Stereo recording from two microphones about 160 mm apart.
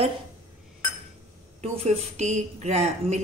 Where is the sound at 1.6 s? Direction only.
45° right (ahead or behind).